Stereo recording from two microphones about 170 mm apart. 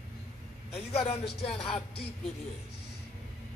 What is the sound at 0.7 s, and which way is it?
Speech, 35° left (ahead or behind).